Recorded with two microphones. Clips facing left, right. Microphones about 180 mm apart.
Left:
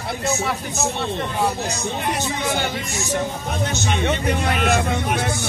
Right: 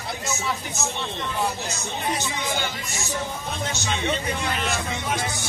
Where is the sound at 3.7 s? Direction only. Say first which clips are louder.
Left 4 dB; 60° left (ahead or behind).